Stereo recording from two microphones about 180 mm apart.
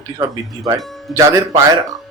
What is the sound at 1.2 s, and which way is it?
Speech, 20° right (ahead or behind).